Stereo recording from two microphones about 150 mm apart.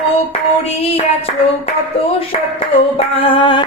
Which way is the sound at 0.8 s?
40° left (ahead or behind).